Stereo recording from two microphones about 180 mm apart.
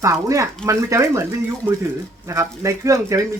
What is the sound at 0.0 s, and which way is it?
Speech, 15° right (ahead or behind).